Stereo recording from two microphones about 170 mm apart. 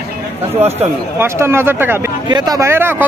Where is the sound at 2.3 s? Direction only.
25° right (ahead or behind).